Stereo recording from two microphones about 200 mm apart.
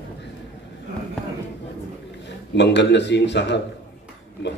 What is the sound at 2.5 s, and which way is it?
A man's voice, 60° left (ahead or behind).